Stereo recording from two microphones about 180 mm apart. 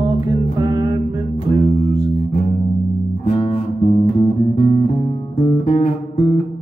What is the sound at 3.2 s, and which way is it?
Music, 35° left (ahead or behind).